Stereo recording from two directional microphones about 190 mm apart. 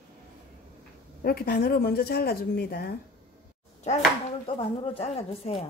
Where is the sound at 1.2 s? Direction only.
50° left (ahead or behind).